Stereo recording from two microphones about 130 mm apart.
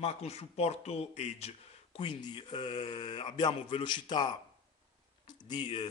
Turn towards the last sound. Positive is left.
turn(degrees=35)  # may be behind; listen again after turning